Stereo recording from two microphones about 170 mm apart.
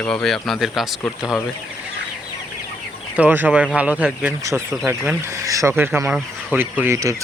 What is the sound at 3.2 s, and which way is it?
Speech, 10° right (ahead or behind).